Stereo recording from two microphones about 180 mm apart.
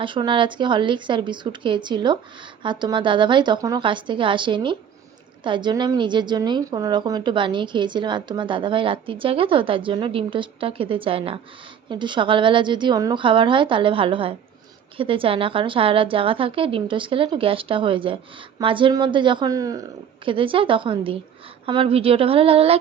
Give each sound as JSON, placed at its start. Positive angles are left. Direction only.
{"t": 0.0, "sound": "a woman's voice", "side_deg": -25}